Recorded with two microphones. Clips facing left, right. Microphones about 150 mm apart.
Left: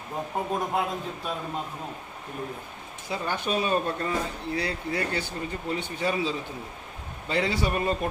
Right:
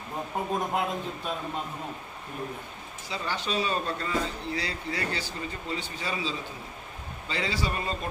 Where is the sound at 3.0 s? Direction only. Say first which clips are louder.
Left 3 dB; 55° left (ahead or behind).